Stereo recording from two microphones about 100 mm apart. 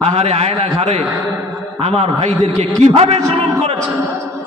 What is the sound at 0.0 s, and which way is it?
A man's voice, 90° right.